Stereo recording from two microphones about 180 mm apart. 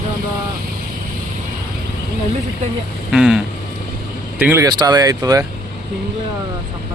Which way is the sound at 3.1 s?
5° right (ahead or behind).